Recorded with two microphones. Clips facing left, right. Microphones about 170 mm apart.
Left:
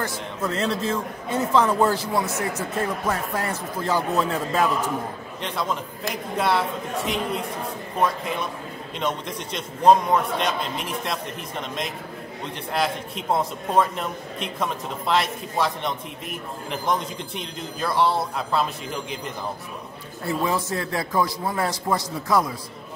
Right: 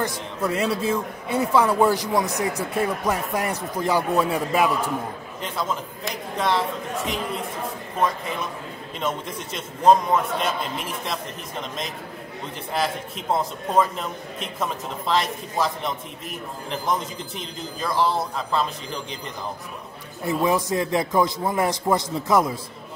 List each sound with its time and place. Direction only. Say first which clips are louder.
0.0 s a man's voice: right 2 dB; 10° right (ahead or behind)
5.4 s a man's voice: even; centre (ahead or behind)
9.0 s a man's voice: even; 5° right (ahead or behind)
20.2 s a man's voice: right 3 dB; 15° right (ahead or behind)